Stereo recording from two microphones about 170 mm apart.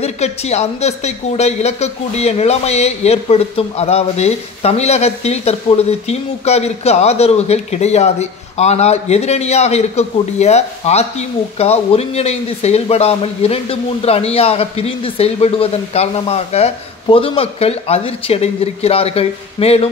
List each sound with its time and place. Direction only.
0.0 s speech: 40° left (ahead or behind)